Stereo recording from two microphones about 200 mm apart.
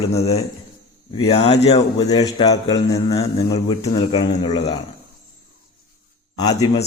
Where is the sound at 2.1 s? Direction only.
20° left (ahead or behind).